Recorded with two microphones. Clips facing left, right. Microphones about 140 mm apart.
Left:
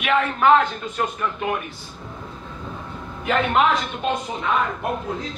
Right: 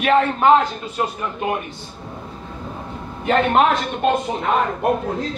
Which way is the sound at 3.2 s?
40° right (ahead or behind).